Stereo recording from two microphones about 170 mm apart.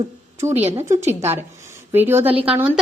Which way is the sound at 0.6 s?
40° right (ahead or behind).